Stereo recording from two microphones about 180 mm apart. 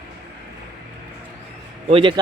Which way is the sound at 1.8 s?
30° right (ahead or behind).